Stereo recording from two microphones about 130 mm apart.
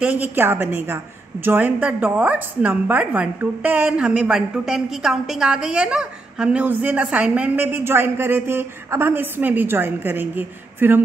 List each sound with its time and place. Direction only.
0.0 s a woman's voice: 15° right (ahead or behind)